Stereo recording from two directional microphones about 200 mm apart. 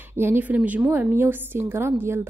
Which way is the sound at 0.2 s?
10° right (ahead or behind).